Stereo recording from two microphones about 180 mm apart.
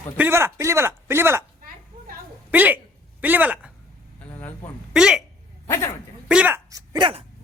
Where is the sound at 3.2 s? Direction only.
10° right (ahead or behind).